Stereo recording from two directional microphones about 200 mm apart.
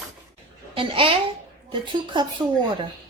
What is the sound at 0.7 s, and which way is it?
A child's voice, 25° right (ahead or behind).